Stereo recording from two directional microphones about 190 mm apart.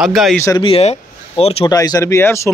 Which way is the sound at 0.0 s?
Centre (ahead or behind).